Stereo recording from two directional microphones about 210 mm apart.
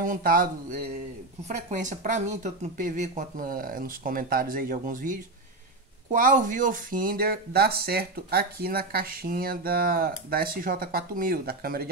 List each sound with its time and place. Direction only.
0.0 s speech: 40° right (ahead or behind)